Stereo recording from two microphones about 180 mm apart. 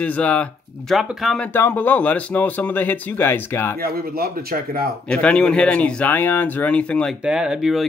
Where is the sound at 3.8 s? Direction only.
60° right (ahead or behind).